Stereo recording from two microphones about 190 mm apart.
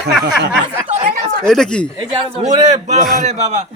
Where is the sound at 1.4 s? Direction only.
5° left (ahead or behind).